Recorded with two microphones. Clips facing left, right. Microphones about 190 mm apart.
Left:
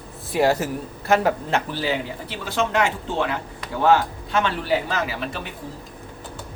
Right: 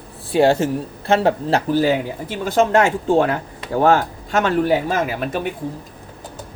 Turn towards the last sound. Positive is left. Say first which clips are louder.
# right 6 dB
turn(degrees=-50)  # may be behind; listen again after turning